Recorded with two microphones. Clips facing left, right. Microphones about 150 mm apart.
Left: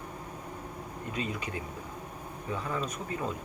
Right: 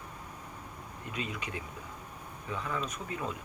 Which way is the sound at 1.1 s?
35° left (ahead or behind).